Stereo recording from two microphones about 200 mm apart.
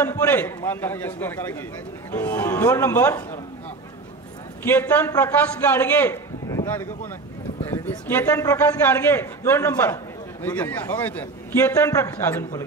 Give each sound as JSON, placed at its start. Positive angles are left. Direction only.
{"t": 0.0, "sound": "a man's voice", "side_deg": 10}
{"t": 4.6, "sound": "a man's voice", "side_deg": 10}